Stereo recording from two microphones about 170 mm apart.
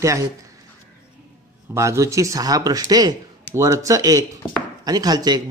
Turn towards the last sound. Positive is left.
turn(degrees=-25)  # may be behind; listen again after turning